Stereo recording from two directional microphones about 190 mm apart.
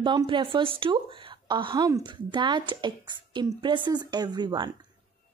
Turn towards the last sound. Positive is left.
turn(degrees=-25)  # may be behind; listen again after turning